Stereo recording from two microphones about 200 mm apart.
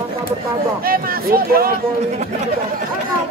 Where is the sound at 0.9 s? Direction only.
50° right (ahead or behind).